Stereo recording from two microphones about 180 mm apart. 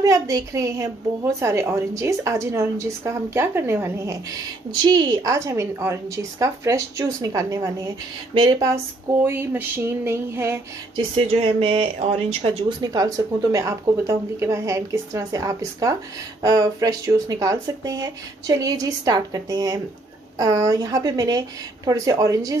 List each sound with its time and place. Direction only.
0.0 s a woman's voice: 20° right (ahead or behind)
11.0 s speech: 30° right (ahead or behind)